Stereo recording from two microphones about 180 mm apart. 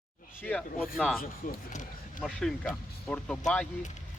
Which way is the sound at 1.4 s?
50° left (ahead or behind).